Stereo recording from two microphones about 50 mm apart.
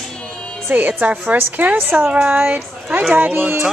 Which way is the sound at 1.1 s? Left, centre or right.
Right.